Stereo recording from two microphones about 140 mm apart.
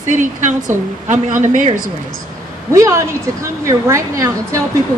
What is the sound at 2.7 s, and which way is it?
A woman's voice, 20° right (ahead or behind).